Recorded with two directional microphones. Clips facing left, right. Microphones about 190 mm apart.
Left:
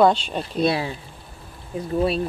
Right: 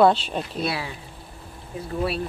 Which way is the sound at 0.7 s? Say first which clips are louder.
Left 6 dB; 25° left (ahead or behind).